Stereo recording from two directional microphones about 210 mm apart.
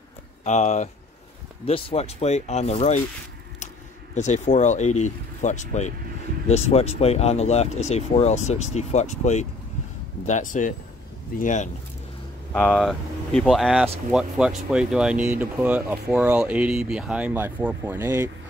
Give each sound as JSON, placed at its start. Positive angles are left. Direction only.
{"t": 0.4, "sound": "speech", "side_deg": 35}
{"t": 4.1, "sound": "speech", "side_deg": 35}
{"t": 12.5, "sound": "speech", "side_deg": 5}